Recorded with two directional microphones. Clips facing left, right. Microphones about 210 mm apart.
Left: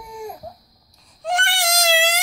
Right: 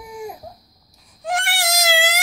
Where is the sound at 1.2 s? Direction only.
5° right (ahead or behind).